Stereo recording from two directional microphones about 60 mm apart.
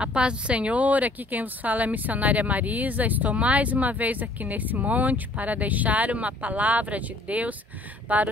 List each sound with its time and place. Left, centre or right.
0.0 s a woman's voice: centre